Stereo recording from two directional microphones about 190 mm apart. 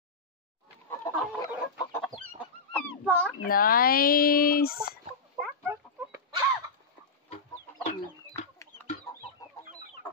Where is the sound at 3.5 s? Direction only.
50° left (ahead or behind).